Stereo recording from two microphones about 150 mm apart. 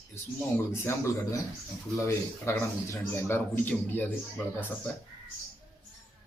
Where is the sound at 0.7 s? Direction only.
15° left (ahead or behind).